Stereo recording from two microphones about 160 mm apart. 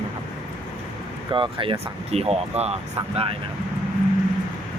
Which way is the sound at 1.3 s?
30° right (ahead or behind).